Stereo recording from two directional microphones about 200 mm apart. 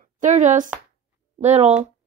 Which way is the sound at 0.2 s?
40° right (ahead or behind).